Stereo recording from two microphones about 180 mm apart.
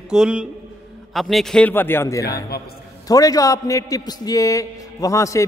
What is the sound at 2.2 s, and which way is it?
Speech, 60° left (ahead or behind).